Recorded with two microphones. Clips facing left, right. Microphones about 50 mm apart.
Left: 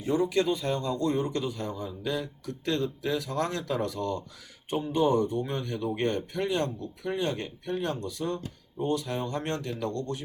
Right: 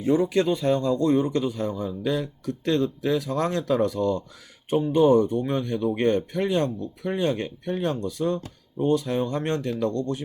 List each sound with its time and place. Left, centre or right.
0.1 s a man's voice: right